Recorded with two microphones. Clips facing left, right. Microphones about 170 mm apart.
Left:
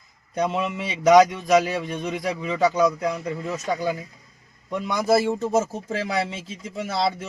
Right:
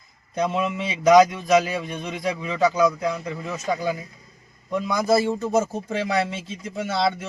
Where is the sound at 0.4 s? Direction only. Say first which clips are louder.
Right 1 dB; centre (ahead or behind).